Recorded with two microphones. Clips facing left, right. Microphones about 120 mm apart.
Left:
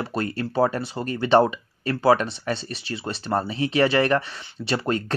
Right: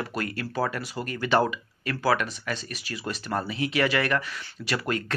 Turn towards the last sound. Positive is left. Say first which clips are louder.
# left 4 dB
turn(degrees=30)  # may be behind; listen again after turning